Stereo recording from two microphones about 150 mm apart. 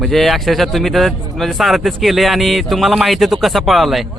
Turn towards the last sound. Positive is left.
turn(degrees=0)  # may be behind; listen again after turning